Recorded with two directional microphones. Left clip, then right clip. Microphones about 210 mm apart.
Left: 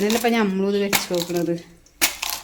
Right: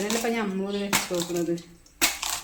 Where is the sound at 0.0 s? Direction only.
55° left (ahead or behind).